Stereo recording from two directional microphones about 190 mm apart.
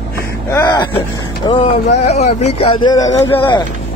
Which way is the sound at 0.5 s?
20° left (ahead or behind).